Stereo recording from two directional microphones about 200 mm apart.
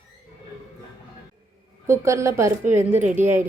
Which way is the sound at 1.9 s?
15° right (ahead or behind).